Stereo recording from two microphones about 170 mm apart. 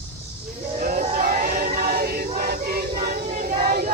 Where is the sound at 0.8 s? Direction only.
55° right (ahead or behind).